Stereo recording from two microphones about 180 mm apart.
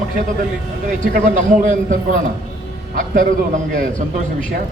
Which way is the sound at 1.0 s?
45° right (ahead or behind).